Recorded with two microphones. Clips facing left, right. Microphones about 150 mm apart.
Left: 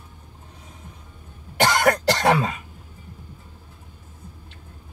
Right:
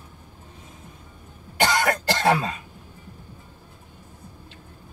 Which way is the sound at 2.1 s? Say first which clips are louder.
Left 2 dB; 70° left (ahead or behind).